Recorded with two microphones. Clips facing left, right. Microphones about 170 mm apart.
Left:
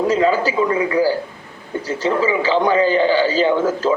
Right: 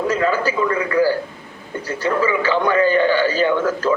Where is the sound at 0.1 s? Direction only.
20° left (ahead or behind).